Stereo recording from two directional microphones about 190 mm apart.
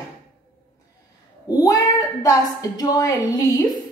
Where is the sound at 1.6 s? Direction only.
20° left (ahead or behind).